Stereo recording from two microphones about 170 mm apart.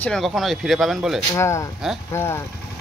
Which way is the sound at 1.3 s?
20° left (ahead or behind).